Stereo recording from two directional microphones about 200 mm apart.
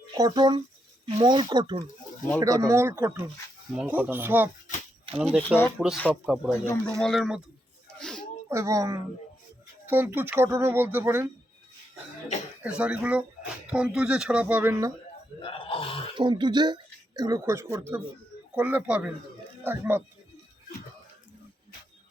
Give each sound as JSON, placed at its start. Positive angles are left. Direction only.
{"t": 0.1, "sound": "a man's voice", "side_deg": -20}
{"t": 6.5, "sound": "speech", "side_deg": 10}
{"t": 7.0, "sound": "a man's voice", "side_deg": 0}
{"t": 7.9, "sound": "a sound", "side_deg": 5}
{"t": 8.4, "sound": "speech", "side_deg": -15}
{"t": 12.6, "sound": "speech", "side_deg": -5}
{"t": 15.4, "sound": "grunt", "side_deg": 25}
{"t": 16.1, "sound": "speech", "side_deg": -25}